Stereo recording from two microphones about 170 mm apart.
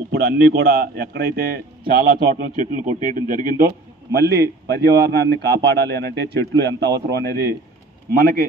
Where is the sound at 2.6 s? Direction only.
45° right (ahead or behind).